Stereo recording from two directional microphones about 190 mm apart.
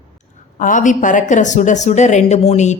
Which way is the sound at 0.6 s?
45° left (ahead or behind).